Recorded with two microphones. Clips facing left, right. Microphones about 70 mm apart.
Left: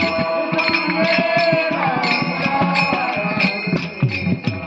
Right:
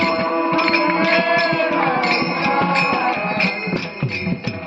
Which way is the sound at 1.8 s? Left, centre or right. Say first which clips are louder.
Right 1 dB; centre.